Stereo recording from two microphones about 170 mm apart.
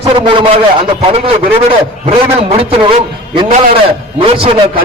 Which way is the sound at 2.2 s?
35° right (ahead or behind).